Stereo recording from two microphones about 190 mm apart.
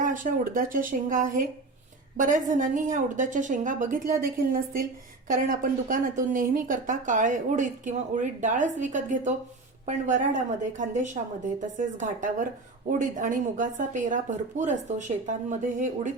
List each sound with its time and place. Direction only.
0.0 s a woman's voice: 45° right (ahead or behind)